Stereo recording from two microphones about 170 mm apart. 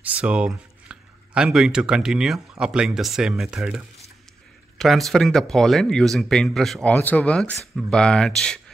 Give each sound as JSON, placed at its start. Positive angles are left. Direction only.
{"t": 0.0, "sound": "speech", "side_deg": -5}